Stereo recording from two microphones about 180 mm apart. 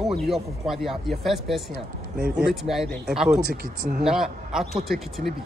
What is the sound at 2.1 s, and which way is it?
Speech, 60° right (ahead or behind).